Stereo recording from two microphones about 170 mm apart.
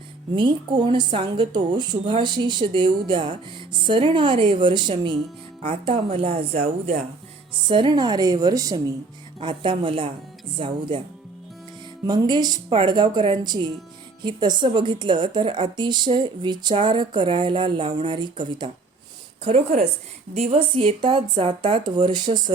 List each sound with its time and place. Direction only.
0.3 s speech: 30° right (ahead or behind)
12.0 s speech: 25° right (ahead or behind)
19.5 s speech: 40° right (ahead or behind)